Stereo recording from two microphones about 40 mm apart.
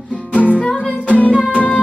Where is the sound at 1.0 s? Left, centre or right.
Left.